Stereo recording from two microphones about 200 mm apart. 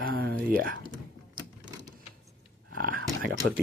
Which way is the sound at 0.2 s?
50° right (ahead or behind).